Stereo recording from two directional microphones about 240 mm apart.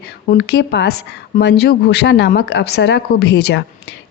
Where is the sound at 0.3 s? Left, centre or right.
Left.